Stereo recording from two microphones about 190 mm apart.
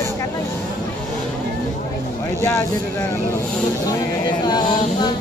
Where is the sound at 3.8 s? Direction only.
20° left (ahead or behind).